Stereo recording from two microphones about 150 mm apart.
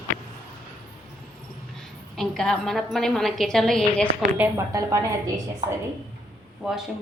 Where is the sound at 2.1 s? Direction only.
5° left (ahead or behind).